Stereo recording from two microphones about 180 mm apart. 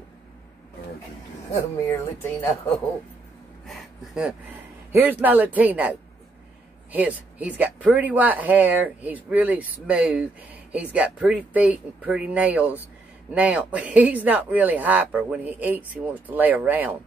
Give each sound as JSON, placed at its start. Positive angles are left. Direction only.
{"t": 1.5, "sound": "speech", "side_deg": 15}
{"t": 3.6, "sound": "a sound", "side_deg": 0}
{"t": 4.9, "sound": "speech", "side_deg": -10}